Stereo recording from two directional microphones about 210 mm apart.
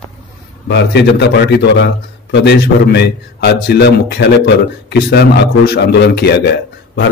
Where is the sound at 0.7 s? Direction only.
55° left (ahead or behind).